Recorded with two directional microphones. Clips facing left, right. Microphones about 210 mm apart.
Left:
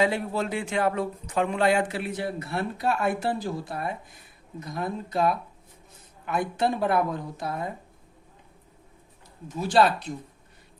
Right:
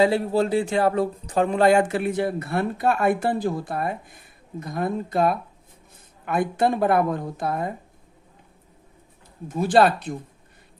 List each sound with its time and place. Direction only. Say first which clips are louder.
0.0 s speech: right 6 dB; 35° right (ahead or behind); by 7.7 s 55° right (ahead or behind)
9.5 s speech: right 4 dB; 55° right (ahead or behind)